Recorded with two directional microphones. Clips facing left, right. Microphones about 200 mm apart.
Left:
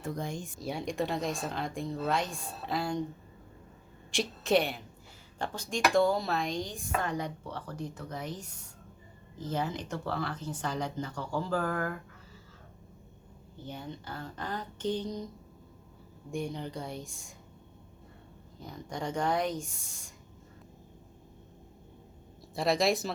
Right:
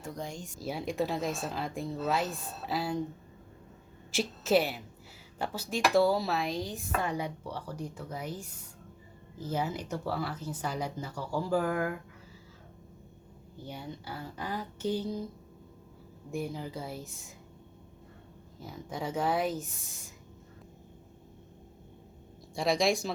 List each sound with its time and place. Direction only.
0.0 s speech: 55° left (ahead or behind)
0.6 s speech: centre (ahead or behind)
4.1 s a woman's voice: 5° right (ahead or behind)
13.7 s a woman's voice: 10° right (ahead or behind)
16.3 s speech: 5° right (ahead or behind)
18.6 s speech: 5° right (ahead or behind)
22.5 s speech: centre (ahead or behind)